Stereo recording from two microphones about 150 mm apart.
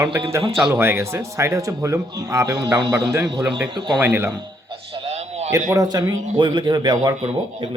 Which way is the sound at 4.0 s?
15° right (ahead or behind).